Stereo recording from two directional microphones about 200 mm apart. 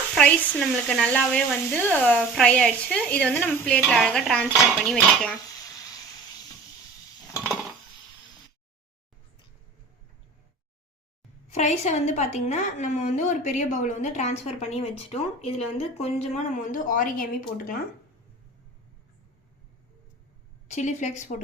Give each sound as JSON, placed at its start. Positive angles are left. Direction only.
{"t": 0.1, "sound": "sizzle", "side_deg": 5}
{"t": 0.9, "sound": "speech", "side_deg": 5}
{"t": 11.5, "sound": "a woman's voice", "side_deg": 35}
{"t": 20.7, "sound": "a woman's voice", "side_deg": 35}